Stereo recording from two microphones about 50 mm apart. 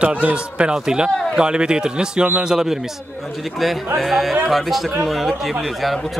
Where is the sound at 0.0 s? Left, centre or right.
Right.